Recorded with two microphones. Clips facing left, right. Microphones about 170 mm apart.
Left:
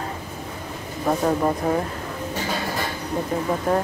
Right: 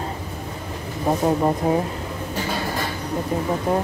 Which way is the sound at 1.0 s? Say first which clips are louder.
Right 1 dB; 15° right (ahead or behind).